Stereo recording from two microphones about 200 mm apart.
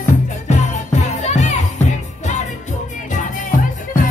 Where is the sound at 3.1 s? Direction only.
40° left (ahead or behind).